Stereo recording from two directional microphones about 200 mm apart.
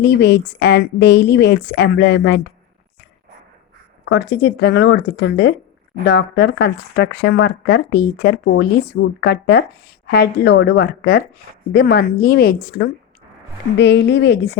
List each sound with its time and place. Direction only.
0.0 s speech: 60° left (ahead or behind)
4.1 s a woman's voice: 55° left (ahead or behind)